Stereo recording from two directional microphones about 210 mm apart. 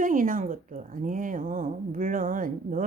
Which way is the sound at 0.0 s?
40° right (ahead or behind).